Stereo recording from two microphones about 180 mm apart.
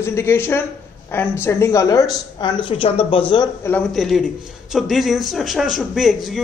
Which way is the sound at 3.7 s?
5° left (ahead or behind).